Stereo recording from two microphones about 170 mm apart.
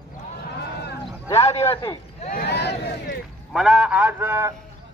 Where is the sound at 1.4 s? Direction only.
40° left (ahead or behind).